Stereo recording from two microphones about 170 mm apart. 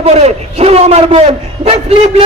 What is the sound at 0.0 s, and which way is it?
A man's voice, 40° right (ahead or behind).